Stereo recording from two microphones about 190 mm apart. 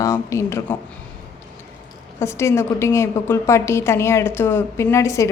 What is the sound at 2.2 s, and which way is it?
A woman's voice, 15° left (ahead or behind).